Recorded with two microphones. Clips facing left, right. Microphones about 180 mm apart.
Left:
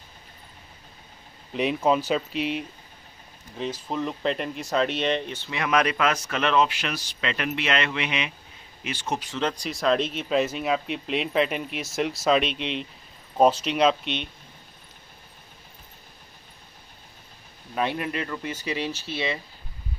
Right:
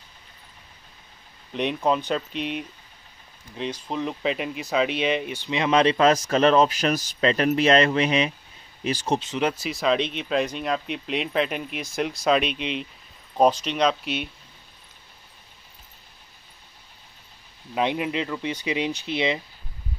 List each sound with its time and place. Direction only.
1.5 s speech: 5° left (ahead or behind); by 9.2 s 35° right (ahead or behind)
9.4 s speech: 5° right (ahead or behind)
17.7 s speech: 15° right (ahead or behind)